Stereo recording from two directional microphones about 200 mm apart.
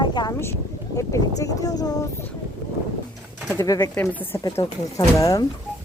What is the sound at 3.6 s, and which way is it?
Speech, 15° left (ahead or behind).